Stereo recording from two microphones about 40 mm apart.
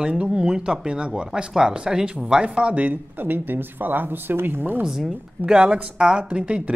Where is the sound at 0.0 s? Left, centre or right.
Right.